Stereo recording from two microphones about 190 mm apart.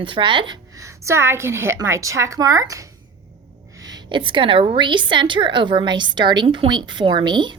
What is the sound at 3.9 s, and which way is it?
A woman's voice, 25° right (ahead or behind).